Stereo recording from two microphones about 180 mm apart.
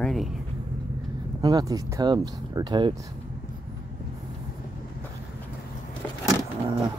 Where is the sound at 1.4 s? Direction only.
20° right (ahead or behind).